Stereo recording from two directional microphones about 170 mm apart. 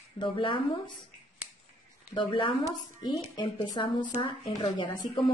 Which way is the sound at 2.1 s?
30° left (ahead or behind).